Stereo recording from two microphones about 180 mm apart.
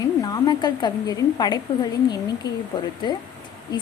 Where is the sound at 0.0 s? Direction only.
25° left (ahead or behind).